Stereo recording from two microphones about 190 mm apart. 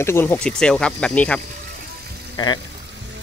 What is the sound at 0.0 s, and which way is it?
Speech, 10° left (ahead or behind).